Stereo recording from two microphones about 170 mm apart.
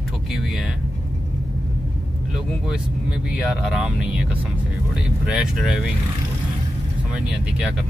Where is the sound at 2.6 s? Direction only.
5° right (ahead or behind).